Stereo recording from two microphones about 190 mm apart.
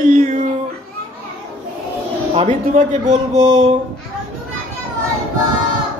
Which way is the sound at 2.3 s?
35° right (ahead or behind).